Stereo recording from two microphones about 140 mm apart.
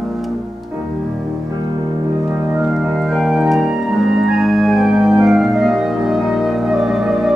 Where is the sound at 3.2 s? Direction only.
Centre (ahead or behind).